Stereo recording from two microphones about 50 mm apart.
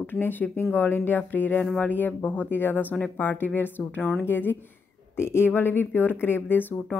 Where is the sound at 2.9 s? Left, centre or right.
Left.